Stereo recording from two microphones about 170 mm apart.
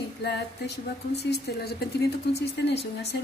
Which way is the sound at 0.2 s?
75° left (ahead or behind).